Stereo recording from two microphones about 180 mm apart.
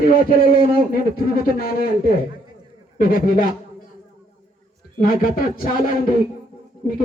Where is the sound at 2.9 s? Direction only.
50° left (ahead or behind).